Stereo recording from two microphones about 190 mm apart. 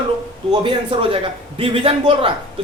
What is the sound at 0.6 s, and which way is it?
A man's voice, 30° right (ahead or behind).